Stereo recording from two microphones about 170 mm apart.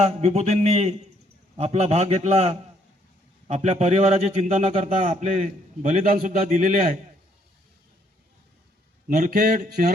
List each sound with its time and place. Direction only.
0.0 s a man's voice: 40° right (ahead or behind)
9.0 s a man's voice: 50° right (ahead or behind)